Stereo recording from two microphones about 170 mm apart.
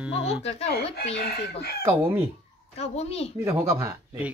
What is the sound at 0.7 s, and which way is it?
Speech, 65° left (ahead or behind).